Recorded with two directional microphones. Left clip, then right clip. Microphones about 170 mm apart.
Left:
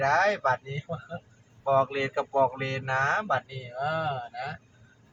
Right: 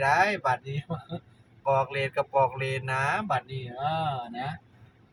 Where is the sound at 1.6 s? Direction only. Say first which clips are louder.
Left 1 dB; 20° right (ahead or behind).